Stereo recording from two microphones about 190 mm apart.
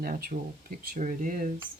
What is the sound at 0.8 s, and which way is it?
Speech, 45° right (ahead or behind).